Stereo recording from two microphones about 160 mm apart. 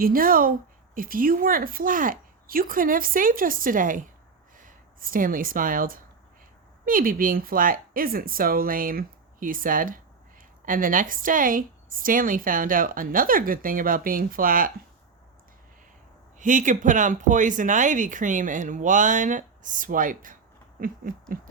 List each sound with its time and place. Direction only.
0.0 s a woman's voice: 65° right (ahead or behind)
16.4 s speech: 55° right (ahead or behind)